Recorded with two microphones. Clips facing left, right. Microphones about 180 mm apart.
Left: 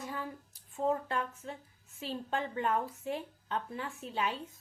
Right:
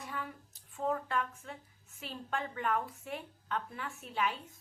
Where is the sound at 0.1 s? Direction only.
30° left (ahead or behind).